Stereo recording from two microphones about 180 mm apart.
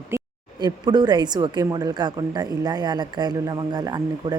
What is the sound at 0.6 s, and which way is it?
A woman's voice, 25° right (ahead or behind).